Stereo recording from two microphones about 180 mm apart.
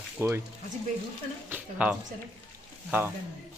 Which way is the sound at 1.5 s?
10° right (ahead or behind).